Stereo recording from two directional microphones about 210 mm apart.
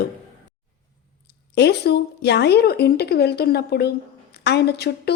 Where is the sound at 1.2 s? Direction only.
50° left (ahead or behind).